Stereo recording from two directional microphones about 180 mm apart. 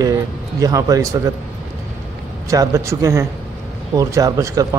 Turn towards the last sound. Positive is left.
turn(degrees=-20)  # may be behind; listen again after turning